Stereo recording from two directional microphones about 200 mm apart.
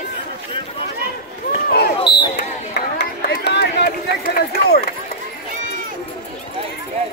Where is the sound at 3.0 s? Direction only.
55° left (ahead or behind).